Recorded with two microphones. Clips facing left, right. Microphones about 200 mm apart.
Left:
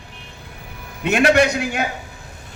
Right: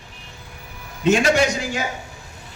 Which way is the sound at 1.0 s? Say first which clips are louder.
Left 1 dB; 60° left (ahead or behind).